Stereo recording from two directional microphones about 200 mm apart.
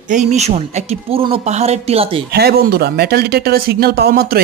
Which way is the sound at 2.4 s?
50° right (ahead or behind).